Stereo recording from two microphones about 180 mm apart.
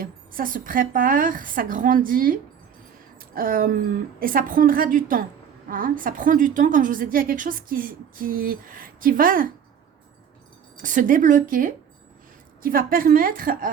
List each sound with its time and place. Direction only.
0.0 s a woman's voice: 50° right (ahead or behind)
10.8 s a woman's voice: 50° right (ahead or behind)